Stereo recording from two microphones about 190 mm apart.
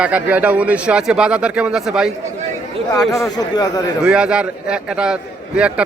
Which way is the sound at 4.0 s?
5° right (ahead or behind).